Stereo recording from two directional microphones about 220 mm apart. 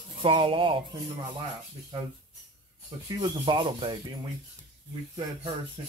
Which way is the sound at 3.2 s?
20° right (ahead or behind).